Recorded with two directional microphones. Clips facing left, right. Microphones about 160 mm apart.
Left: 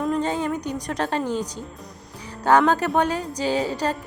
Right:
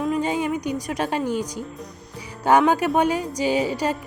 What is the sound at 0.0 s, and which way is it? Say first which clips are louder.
A woman's voice: right 1 dB; 10° right (ahead or behind).